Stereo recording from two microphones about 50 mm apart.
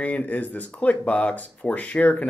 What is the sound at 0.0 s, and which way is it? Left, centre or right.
Speech, left.